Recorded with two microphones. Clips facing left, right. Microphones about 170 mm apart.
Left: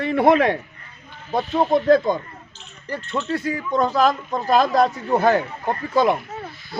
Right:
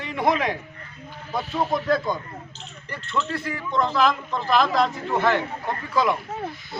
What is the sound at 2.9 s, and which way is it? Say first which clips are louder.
Speech: left 3 dB; 40° left (ahead or behind).